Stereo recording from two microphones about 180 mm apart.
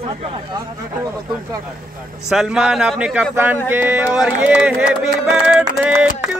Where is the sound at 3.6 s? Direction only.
10° right (ahead or behind).